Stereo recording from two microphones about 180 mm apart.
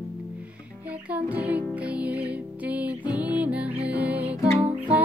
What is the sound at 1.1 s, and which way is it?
Music, 10° right (ahead or behind).